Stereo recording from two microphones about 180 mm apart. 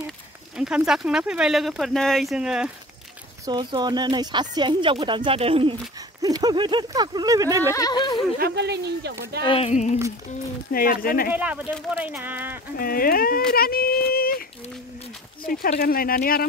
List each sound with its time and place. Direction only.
0.6 s speech: 5° right (ahead or behind)
3.4 s speech: 25° right (ahead or behind)
7.7 s speech: 20° left (ahead or behind)
8.4 s speech: 65° right (ahead or behind)
9.4 s speech: 30° left (ahead or behind)
10.7 s speech: 55° left (ahead or behind)
11.3 s speech: 10° right (ahead or behind)
12.7 s speech: 55° left (ahead or behind)
15.8 s speech: 55° left (ahead or behind)